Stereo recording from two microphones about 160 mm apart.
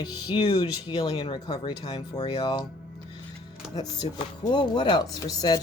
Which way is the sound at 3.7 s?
25° left (ahead or behind).